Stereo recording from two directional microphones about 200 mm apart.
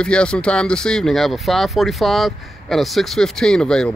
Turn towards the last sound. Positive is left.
turn(degrees=5)  # may be behind; listen again after turning